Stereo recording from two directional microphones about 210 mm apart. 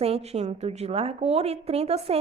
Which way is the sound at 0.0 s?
30° right (ahead or behind).